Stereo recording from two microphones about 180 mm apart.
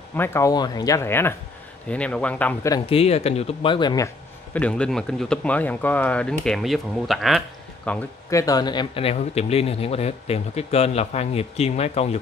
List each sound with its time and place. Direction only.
0.1 s speech: 10° left (ahead or behind)
2.9 s speech: 35° left (ahead or behind)
4.6 s speech: 5° left (ahead or behind)
8.3 s speech: 20° left (ahead or behind); by 12.2 s 35° left (ahead or behind)